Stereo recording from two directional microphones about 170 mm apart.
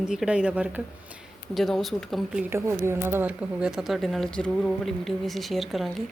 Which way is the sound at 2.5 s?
15° right (ahead or behind).